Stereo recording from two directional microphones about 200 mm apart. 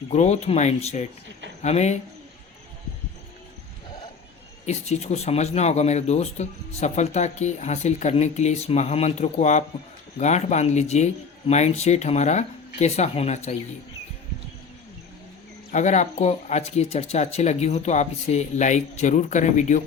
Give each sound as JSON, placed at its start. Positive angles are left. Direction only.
{"t": 0.1, "sound": "speech", "side_deg": 35}
{"t": 4.6, "sound": "speech", "side_deg": 35}
{"t": 15.7, "sound": "speech", "side_deg": 35}